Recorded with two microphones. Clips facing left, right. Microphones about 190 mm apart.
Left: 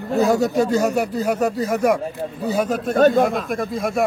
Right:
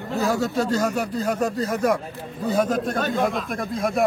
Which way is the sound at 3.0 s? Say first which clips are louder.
Left 8 dB; 45° left (ahead or behind).